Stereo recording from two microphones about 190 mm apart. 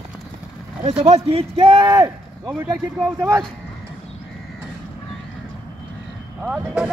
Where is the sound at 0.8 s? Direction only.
35° right (ahead or behind); by 3.4 s 15° right (ahead or behind).